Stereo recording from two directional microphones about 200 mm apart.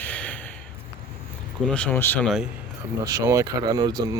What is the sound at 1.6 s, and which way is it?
Speech, 5° left (ahead or behind).